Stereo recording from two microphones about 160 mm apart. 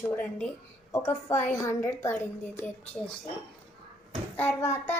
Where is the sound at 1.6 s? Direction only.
20° left (ahead or behind).